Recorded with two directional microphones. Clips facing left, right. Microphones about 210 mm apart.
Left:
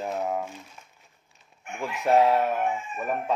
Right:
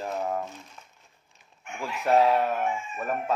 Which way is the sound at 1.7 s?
20° left (ahead or behind).